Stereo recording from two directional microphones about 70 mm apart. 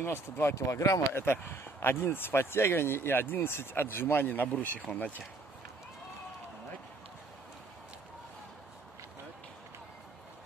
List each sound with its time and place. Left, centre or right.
0.0 s speech: left
1.1 s speech: left